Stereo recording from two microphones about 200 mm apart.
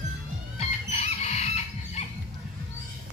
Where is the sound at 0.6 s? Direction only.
35° left (ahead or behind).